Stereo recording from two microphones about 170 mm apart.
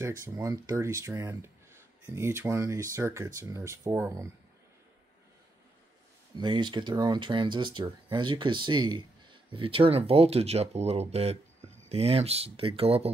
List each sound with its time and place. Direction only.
0.2 s speech: 20° right (ahead or behind)
6.3 s speech: 25° right (ahead or behind)